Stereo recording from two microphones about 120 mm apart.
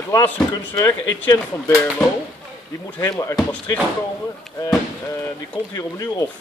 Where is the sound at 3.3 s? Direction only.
10° left (ahead or behind).